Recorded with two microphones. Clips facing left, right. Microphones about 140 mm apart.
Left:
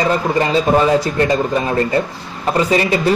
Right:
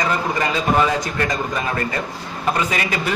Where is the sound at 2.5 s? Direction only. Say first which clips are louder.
Left 10 dB; 30° left (ahead or behind).